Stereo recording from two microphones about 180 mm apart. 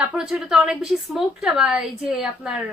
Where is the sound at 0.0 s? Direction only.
5° right (ahead or behind).